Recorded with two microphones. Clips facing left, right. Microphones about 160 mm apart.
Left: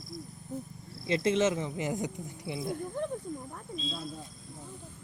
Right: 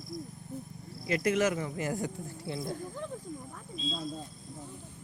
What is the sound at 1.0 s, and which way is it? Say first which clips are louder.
Speech: left 1 dB; 25° left (ahead or behind).